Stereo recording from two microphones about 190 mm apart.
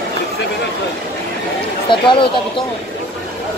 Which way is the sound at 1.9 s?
25° left (ahead or behind).